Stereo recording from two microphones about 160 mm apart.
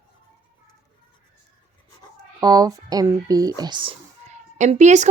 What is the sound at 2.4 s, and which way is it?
Speech, 25° right (ahead or behind).